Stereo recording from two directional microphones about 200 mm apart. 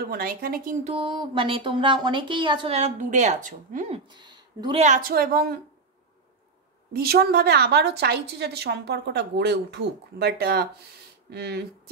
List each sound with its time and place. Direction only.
0.1 s a woman's voice: 45° right (ahead or behind)
0.9 s speech: 25° right (ahead or behind)
4.1 s speech: 20° right (ahead or behind)
4.8 s a woman's voice: 40° right (ahead or behind)
6.9 s a woman's voice: 50° right (ahead or behind)